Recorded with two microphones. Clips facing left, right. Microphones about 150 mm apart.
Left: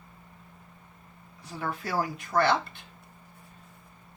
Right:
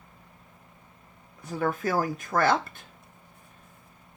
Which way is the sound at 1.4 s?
50° right (ahead or behind).